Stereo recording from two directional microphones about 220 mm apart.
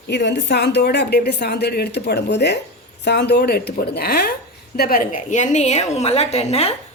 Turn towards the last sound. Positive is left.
turn(degrees=30)  # may be behind; listen again after turning